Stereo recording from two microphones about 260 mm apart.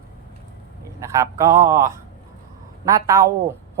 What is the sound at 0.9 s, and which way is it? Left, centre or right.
Speech, centre.